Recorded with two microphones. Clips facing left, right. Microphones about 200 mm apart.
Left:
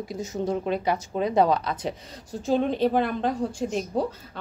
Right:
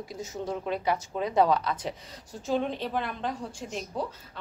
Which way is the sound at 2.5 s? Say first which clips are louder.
Left 6 dB; 40° left (ahead or behind).